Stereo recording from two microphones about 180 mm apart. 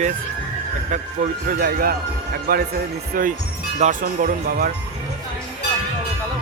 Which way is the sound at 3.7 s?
45° right (ahead or behind).